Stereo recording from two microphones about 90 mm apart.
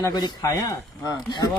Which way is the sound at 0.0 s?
45° left (ahead or behind).